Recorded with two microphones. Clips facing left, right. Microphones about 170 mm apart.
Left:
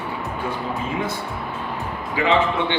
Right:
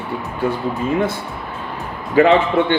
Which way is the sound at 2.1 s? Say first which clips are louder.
Right 7 dB; 50° right (ahead or behind).